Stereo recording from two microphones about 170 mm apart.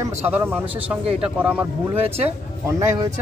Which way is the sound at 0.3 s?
10° right (ahead or behind).